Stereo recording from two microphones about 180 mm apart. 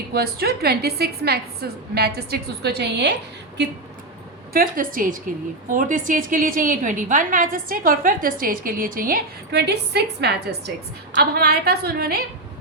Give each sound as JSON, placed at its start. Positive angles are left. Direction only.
{"t": 0.1, "sound": "a woman's voice", "side_deg": -60}
{"t": 4.5, "sound": "a woman's voice", "side_deg": -50}